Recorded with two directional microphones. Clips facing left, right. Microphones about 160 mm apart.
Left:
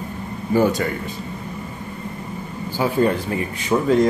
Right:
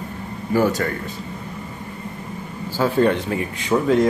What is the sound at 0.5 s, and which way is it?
Speech, 20° left (ahead or behind).